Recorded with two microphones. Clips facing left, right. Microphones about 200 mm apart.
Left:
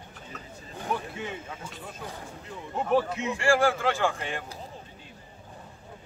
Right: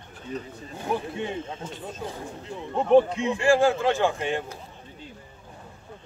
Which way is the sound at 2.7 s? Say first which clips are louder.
Right 7 dB; 30° right (ahead or behind).